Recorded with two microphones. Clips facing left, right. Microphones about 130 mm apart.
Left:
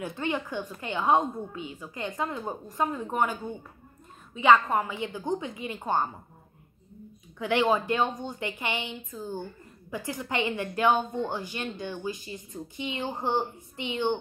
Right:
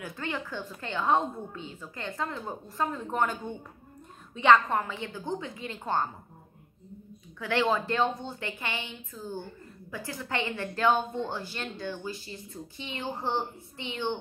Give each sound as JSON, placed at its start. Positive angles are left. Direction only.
{"t": 0.0, "sound": "a woman's voice", "side_deg": 20}
{"t": 7.3, "sound": "a woman's voice", "side_deg": 15}